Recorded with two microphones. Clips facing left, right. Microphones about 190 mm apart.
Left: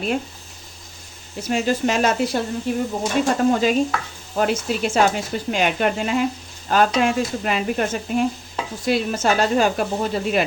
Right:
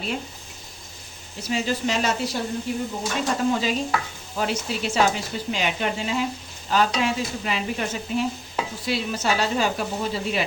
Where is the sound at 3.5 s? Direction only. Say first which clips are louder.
Left 5 dB; 50° left (ahead or behind).